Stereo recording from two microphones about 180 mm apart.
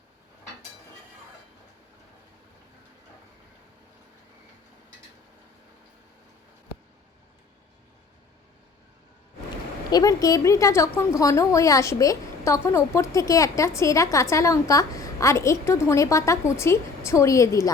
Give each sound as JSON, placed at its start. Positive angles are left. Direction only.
{"t": 9.9, "sound": "a woman's voice", "side_deg": 20}